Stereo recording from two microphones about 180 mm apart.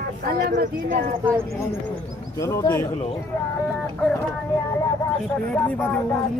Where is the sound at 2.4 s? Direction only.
15° left (ahead or behind).